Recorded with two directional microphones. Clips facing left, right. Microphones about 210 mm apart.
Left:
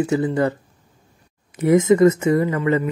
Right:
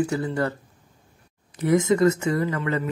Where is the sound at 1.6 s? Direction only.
20° left (ahead or behind).